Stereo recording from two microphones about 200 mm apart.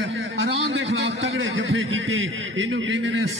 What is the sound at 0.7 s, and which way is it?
A man's voice, 70° right (ahead or behind).